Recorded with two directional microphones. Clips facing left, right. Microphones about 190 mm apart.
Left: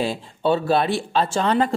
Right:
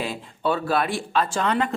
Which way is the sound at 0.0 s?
30° left (ahead or behind).